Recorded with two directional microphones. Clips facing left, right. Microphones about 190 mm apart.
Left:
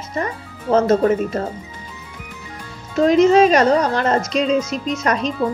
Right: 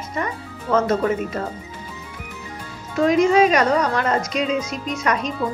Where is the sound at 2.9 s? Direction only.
30° left (ahead or behind).